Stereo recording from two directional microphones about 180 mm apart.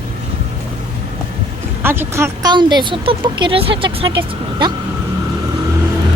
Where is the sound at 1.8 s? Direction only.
10° right (ahead or behind); by 4.7 s 30° right (ahead or behind).